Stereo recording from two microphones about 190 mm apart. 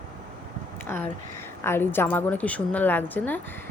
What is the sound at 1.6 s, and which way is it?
A woman's voice, 10° left (ahead or behind).